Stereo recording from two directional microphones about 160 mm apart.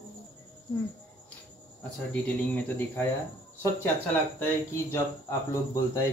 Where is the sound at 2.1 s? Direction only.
10° left (ahead or behind).